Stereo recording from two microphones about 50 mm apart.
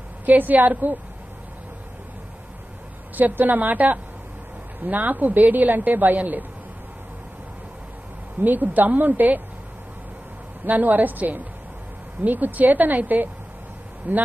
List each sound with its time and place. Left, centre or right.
0.2 s speech: right
3.2 s speech: right
8.4 s speech: right
10.6 s speech: right